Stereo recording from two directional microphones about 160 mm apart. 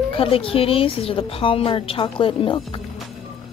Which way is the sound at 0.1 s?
35° left (ahead or behind).